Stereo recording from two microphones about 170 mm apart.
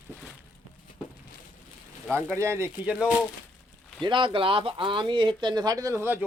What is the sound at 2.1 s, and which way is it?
Speech, 15° right (ahead or behind).